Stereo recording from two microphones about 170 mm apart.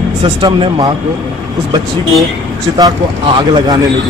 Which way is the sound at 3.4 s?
25° right (ahead or behind).